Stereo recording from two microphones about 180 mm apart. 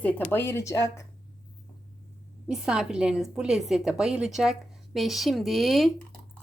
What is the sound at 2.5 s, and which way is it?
Speech, 5° right (ahead or behind).